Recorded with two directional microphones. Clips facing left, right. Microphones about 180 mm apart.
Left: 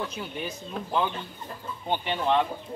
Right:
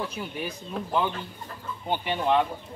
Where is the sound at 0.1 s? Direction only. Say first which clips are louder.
Right 1 dB; 10° right (ahead or behind).